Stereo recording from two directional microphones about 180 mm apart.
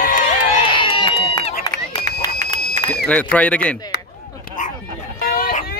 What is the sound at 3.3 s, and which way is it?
Speech, 5° left (ahead or behind).